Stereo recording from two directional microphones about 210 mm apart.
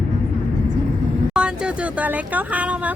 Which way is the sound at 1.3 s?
5° right (ahead or behind).